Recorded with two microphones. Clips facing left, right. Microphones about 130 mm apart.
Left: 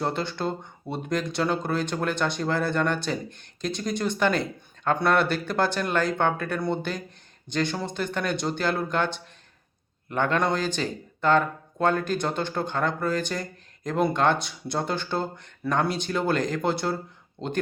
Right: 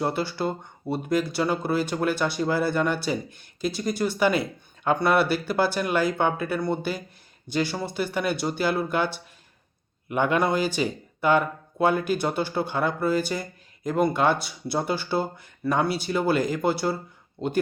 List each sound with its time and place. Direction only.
0.0 s speech: 5° right (ahead or behind)